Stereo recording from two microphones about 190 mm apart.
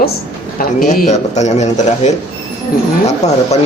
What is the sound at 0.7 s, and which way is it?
A man's voice, 45° left (ahead or behind).